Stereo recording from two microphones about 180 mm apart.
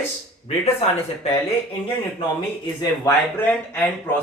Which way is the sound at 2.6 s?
20° left (ahead or behind).